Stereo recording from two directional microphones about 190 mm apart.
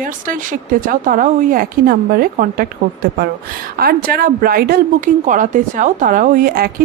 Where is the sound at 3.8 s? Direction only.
50° right (ahead or behind).